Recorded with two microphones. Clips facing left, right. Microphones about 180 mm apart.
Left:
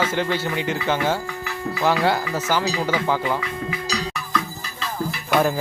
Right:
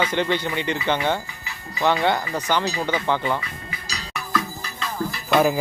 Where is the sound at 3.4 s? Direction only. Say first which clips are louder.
Left 9 dB; 85° left.